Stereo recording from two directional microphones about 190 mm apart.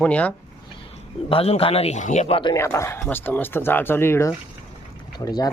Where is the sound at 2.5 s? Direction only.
15° left (ahead or behind).